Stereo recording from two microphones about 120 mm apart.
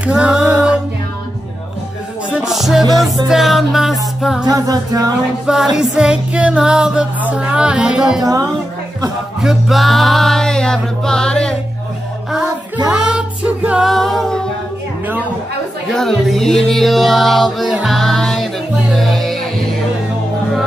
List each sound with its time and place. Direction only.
0.0 s a sound: 10° right (ahead or behind)
2.3 s music: 5° right (ahead or behind)
4.5 s music: 30° right (ahead or behind)
5.5 s music: 5° right (ahead or behind)
8.2 s speech: 30° right (ahead or behind)
9.4 s music: centre (ahead or behind)
12.9 s music: 10° right (ahead or behind)
13.8 s a capella: centre (ahead or behind)
15.9 s music: 5° left (ahead or behind)